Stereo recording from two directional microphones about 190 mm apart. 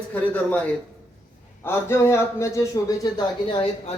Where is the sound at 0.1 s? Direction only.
10° left (ahead or behind); by 3.9 s 30° left (ahead or behind).